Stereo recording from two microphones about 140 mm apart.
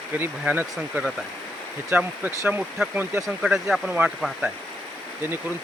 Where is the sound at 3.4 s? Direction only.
5° right (ahead or behind).